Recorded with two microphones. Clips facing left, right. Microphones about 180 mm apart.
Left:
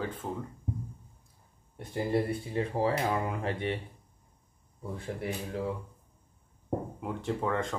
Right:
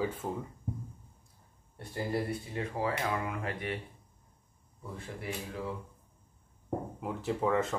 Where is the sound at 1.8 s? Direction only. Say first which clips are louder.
Left 4 dB; 20° left (ahead or behind).